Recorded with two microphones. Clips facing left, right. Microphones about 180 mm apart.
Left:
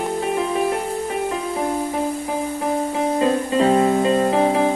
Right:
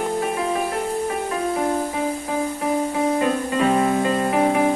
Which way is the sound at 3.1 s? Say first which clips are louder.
Left 2 dB; 25° left (ahead or behind).